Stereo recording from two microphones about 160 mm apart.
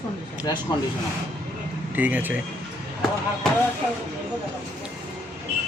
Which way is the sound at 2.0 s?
10° right (ahead or behind).